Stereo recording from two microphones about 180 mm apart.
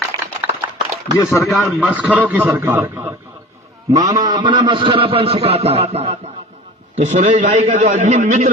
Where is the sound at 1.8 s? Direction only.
10° right (ahead or behind); by 8.4 s 40° right (ahead or behind).